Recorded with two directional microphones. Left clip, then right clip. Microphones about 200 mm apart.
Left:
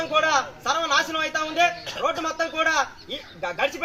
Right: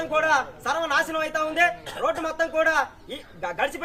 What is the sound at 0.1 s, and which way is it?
Speech, 10° right (ahead or behind).